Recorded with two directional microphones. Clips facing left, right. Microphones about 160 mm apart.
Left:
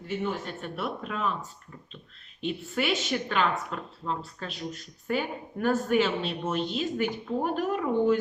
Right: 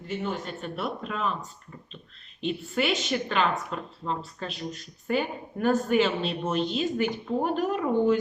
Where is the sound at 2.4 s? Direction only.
Centre (ahead or behind).